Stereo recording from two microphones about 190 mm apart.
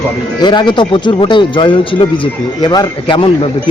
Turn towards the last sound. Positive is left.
turn(degrees=25)  # may be behind; listen again after turning